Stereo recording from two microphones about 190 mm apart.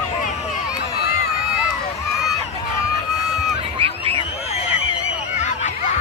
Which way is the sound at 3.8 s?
30° right (ahead or behind).